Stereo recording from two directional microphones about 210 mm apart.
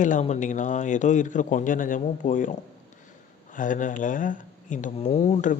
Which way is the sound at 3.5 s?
40° left (ahead or behind).